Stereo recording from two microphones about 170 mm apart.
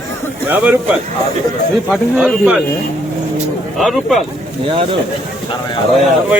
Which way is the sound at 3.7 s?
Centre (ahead or behind).